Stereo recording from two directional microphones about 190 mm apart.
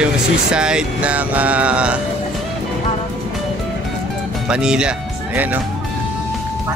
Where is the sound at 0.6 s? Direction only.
5° right (ahead or behind).